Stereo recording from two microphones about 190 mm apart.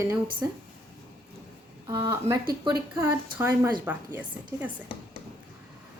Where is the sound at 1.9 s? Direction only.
20° right (ahead or behind).